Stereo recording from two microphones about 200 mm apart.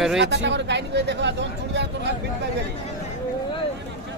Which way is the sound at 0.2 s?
60° right (ahead or behind).